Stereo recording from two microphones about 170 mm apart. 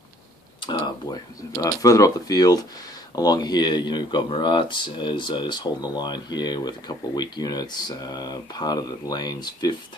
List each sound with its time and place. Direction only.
0.6 s speech: 30° left (ahead or behind)